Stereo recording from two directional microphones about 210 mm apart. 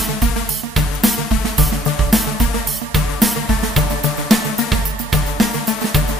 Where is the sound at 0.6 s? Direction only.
Centre (ahead or behind).